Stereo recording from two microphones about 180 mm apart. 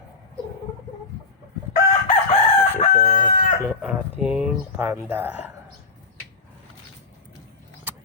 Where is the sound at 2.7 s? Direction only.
40° left (ahead or behind).